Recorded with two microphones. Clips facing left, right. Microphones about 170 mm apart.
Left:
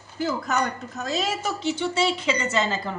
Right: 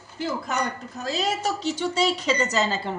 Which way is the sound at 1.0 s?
40° right (ahead or behind).